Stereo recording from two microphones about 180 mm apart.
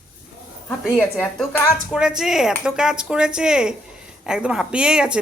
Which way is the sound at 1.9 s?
5° right (ahead or behind).